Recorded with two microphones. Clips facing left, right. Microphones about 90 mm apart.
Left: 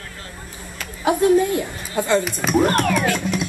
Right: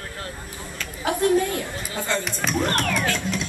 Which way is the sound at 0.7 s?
15° left (ahead or behind).